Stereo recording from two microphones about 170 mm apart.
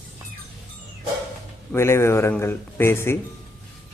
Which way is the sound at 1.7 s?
15° left (ahead or behind).